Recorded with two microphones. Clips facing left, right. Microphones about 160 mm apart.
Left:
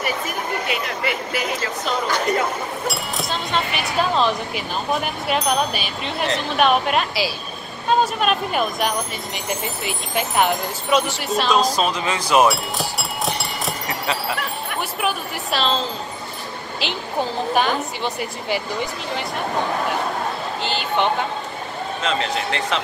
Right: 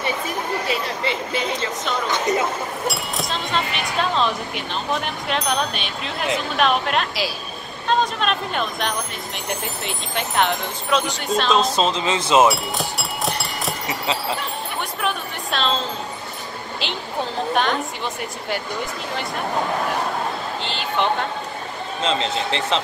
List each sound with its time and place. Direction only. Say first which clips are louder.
0.7 s speech: even; 30° right (ahead or behind)
2.9 s speech: left 1 dB; centre (ahead or behind)
11.5 s speech: even; 25° right (ahead or behind)
12.4 s music: even; centre (ahead or behind)
13.8 s speech: right 1 dB; 20° right (ahead or behind)
14.8 s a sound: left 2 dB; 5° left (ahead or behind)
16.8 s speech: left 3 dB; centre (ahead or behind)
20.6 s speech: left 2 dB; centre (ahead or behind)
22.0 s speech: right 1 dB; 30° right (ahead or behind)